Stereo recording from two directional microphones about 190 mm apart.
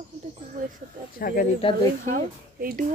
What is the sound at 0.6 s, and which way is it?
Speech, 45° right (ahead or behind).